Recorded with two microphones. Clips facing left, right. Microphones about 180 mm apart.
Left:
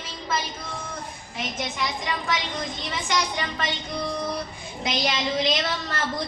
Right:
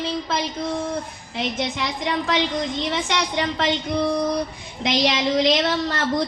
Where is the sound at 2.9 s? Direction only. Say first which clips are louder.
Right 4 dB; 75° right (ahead or behind).